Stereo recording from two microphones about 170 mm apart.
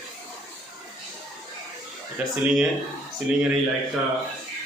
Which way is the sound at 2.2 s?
5° right (ahead or behind).